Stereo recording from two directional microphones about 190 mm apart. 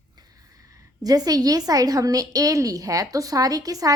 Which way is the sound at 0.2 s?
20° right (ahead or behind).